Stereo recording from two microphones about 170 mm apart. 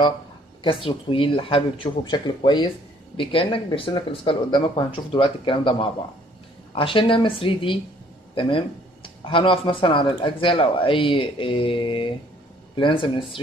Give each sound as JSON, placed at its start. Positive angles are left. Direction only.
{"t": 0.8, "sound": "speech", "side_deg": 30}